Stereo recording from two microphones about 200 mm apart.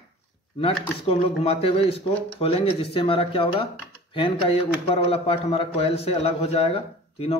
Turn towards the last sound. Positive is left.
turn(degrees=30)  # may be behind; listen again after turning